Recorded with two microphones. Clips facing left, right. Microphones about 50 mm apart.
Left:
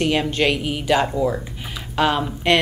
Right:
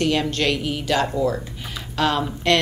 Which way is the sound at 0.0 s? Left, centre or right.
Centre.